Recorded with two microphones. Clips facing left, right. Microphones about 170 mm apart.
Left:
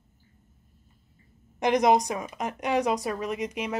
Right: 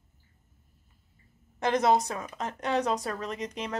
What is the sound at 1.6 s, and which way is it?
Speech, 15° left (ahead or behind).